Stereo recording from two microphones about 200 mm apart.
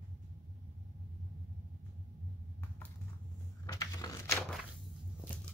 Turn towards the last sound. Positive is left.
turn(degrees=20)  # may be behind; listen again after turning